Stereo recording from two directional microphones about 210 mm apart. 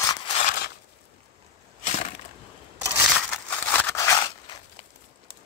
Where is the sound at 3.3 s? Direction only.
10° left (ahead or behind).